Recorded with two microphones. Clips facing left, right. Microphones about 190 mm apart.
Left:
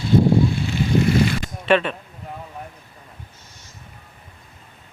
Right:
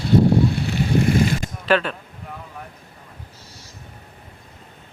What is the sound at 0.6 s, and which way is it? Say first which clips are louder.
Boat: even; 60° right (ahead or behind).